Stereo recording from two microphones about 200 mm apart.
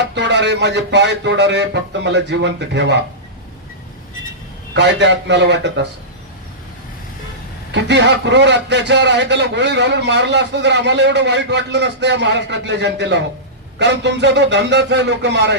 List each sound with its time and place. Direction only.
0.0 s a man's voice: 60° right (ahead or behind)
4.7 s a man's voice: 60° right (ahead or behind)
7.7 s a man's voice: 60° right (ahead or behind)